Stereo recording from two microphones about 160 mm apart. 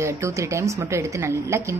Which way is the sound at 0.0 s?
20° right (ahead or behind).